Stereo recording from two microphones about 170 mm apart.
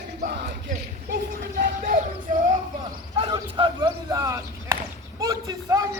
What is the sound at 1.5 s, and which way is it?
Music, 55° right (ahead or behind).